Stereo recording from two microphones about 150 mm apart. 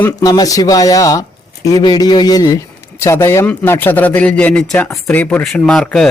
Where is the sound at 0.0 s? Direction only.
25° left (ahead or behind); by 4.6 s 10° left (ahead or behind).